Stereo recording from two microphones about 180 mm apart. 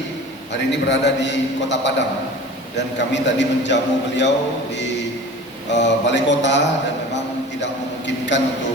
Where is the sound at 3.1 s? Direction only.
80° left.